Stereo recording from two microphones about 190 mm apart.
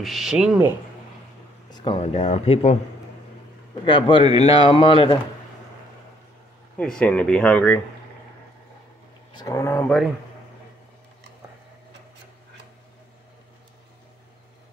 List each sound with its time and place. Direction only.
0.0 s speech: centre (ahead or behind)
1.7 s speech: 25° left (ahead or behind)
3.8 s speech: 25° left (ahead or behind)
6.8 s speech: 5° left (ahead or behind)
9.3 s speech: 20° left (ahead or behind)